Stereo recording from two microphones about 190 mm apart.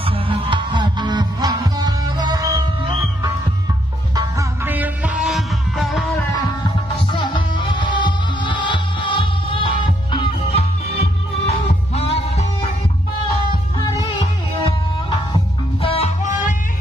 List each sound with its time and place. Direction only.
0.0 s music: 25° right (ahead or behind)
4.1 s music: 20° right (ahead or behind); by 6.2 s centre (ahead or behind)
7.1 s music: 25° left (ahead or behind)
13.7 s music: 20° left (ahead or behind); by 16.5 s 35° left (ahead or behind)